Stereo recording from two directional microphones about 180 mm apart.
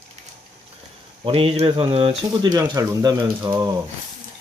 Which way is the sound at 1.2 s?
30° right (ahead or behind).